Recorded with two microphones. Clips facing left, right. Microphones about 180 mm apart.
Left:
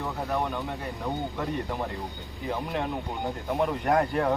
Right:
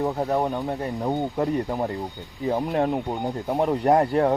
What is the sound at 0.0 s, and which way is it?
Speech, 35° right (ahead or behind).